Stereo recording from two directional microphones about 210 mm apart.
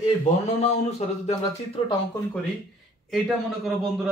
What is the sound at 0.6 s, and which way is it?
Speech, 30° left (ahead or behind).